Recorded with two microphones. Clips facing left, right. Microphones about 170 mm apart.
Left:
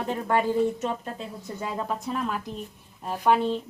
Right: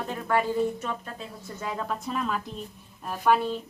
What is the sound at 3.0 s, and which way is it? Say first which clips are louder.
Speech: left 1 dB; 20° left (ahead or behind).